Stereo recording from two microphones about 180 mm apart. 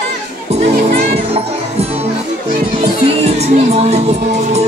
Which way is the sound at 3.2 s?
35° right (ahead or behind).